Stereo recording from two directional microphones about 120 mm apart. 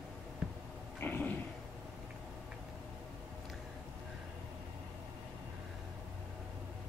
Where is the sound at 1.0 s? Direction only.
15° left (ahead or behind).